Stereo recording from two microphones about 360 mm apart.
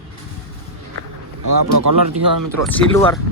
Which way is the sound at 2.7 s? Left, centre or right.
Centre.